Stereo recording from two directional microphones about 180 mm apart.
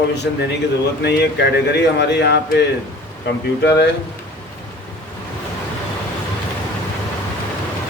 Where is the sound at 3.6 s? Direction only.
70° left (ahead or behind).